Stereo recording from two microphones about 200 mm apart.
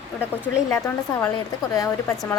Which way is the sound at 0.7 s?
15° left (ahead or behind).